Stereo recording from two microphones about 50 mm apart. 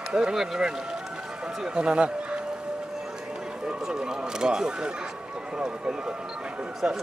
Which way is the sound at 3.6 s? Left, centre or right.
Centre.